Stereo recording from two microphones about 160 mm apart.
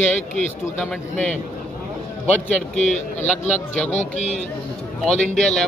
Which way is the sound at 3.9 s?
45° left (ahead or behind).